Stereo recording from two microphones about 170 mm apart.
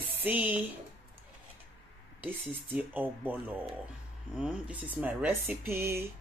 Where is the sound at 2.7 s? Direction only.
10° right (ahead or behind).